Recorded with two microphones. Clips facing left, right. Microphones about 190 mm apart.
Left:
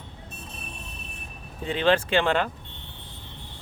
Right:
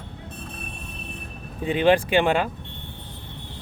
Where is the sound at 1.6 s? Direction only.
15° right (ahead or behind).